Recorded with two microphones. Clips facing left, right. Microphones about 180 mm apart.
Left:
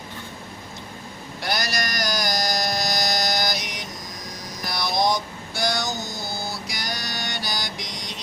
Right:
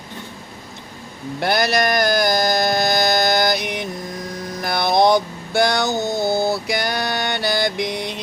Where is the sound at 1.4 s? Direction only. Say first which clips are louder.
Right 9 dB; 60° right (ahead or behind).